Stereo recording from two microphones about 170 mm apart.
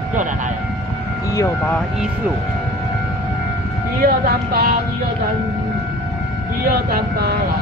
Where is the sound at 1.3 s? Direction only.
20° left (ahead or behind).